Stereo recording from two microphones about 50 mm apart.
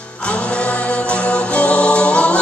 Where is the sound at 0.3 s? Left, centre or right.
Left.